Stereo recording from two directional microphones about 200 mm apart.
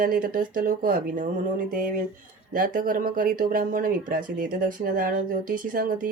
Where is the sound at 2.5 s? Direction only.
45° right (ahead or behind).